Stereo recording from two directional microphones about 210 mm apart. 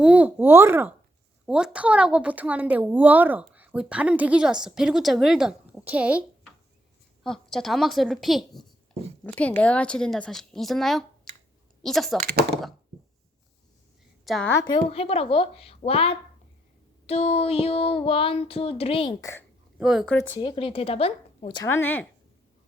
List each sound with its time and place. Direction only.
0.0 s speech: 5° right (ahead or behind)
7.3 s speech: centre (ahead or behind)
12.2 s speech: 50° right (ahead or behind)
14.3 s speech: centre (ahead or behind)
14.5 s speech: 20° left (ahead or behind)
19.2 s a woman's voice: 15° left (ahead or behind)
19.8 s speech: centre (ahead or behind)
20.4 s speech: 25° left (ahead or behind); by 22.0 s 10° left (ahead or behind)